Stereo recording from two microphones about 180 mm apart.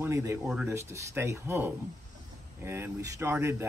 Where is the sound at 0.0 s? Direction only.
15° right (ahead or behind).